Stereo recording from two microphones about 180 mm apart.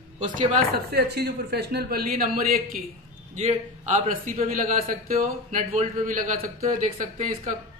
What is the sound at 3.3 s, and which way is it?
A man's voice, 40° right (ahead or behind).